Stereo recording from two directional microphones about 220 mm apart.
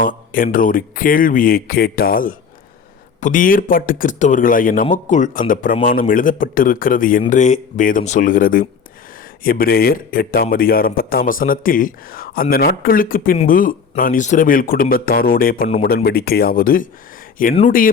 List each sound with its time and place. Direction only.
0.0 s speech: 40° left (ahead or behind)